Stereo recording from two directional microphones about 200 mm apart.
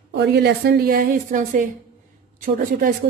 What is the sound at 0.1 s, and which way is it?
Speech, 55° right (ahead or behind).